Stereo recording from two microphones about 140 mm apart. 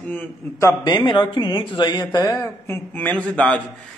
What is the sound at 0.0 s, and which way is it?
Speech, 10° left (ahead or behind).